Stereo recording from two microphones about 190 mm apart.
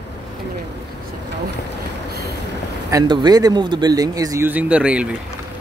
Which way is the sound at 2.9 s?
20° right (ahead or behind).